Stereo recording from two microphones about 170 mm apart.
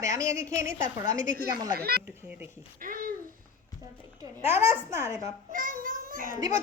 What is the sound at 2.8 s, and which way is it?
Babbling, 55° right (ahead or behind).